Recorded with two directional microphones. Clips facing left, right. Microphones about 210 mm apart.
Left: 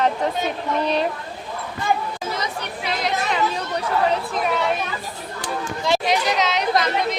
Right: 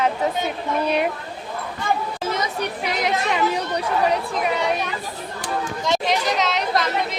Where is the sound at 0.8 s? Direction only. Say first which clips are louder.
Right 1 dB; 10° right (ahead or behind).